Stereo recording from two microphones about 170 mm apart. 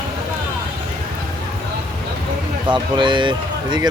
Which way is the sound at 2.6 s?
25° right (ahead or behind).